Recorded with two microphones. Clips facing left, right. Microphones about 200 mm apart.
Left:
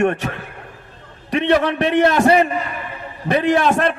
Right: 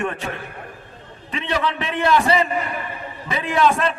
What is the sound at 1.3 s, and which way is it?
Speech, 70° left (ahead or behind).